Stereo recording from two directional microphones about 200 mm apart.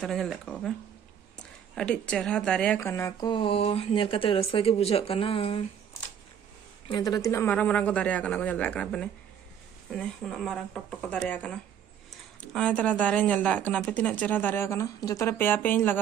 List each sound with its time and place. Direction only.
0.0 s speech: centre (ahead or behind); by 5.6 s 30° left (ahead or behind)
6.9 s a woman's voice: 20° left (ahead or behind)
12.5 s a woman's voice: 5° left (ahead or behind)